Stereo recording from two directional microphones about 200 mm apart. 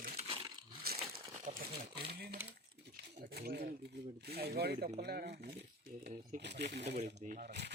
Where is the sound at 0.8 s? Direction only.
50° right (ahead or behind).